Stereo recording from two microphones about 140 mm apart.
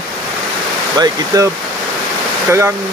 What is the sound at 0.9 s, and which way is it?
Speech, 25° right (ahead or behind).